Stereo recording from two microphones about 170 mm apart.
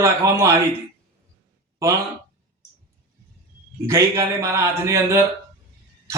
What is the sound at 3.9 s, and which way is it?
Speech, 20° right (ahead or behind).